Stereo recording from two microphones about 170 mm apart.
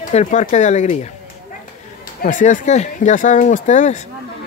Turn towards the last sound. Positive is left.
turn(degrees=45)  # may be behind; listen again after turning